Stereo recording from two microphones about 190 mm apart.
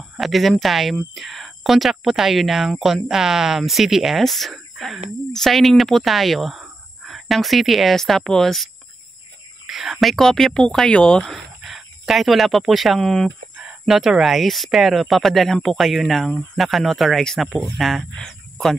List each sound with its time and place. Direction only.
0.2 s speech: centre (ahead or behind)
9.7 s speech: centre (ahead or behind)